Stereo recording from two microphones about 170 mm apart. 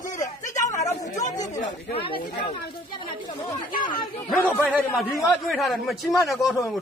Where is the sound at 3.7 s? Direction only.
55° left (ahead or behind).